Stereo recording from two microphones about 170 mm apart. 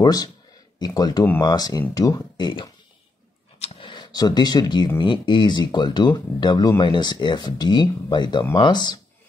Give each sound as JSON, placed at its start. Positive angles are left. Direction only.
{"t": 0.0, "sound": "speech", "side_deg": 25}